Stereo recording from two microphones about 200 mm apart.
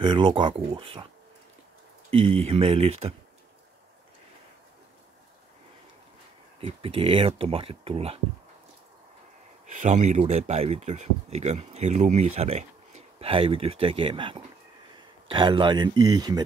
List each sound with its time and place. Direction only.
0.0 s speech: 25° right (ahead or behind)
2.2 s speech: 30° right (ahead or behind)
6.6 s speech: 30° right (ahead or behind)
9.8 s speech: 35° right (ahead or behind); by 16.4 s 20° right (ahead or behind)